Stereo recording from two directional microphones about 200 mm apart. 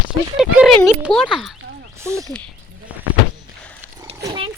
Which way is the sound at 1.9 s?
15° right (ahead or behind).